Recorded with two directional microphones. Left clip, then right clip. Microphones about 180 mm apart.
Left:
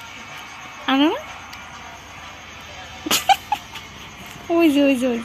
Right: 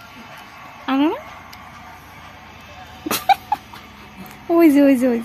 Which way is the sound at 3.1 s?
15° right (ahead or behind).